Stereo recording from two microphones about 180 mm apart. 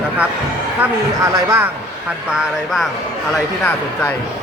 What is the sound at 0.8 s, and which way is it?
Speech, 15° right (ahead or behind).